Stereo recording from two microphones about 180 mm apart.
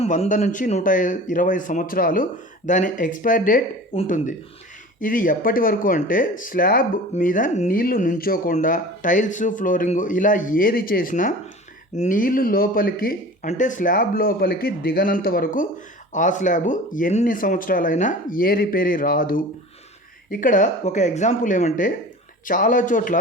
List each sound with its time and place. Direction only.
0.0 s speech: 40° left (ahead or behind)